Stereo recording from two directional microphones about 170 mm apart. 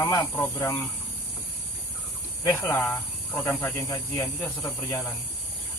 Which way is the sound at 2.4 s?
15° left (ahead or behind).